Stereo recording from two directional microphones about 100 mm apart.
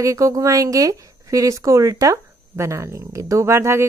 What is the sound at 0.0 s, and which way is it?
Speech, 35° right (ahead or behind).